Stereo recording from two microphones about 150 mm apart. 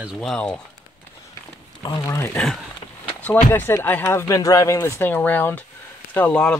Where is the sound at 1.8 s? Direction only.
25° left (ahead or behind).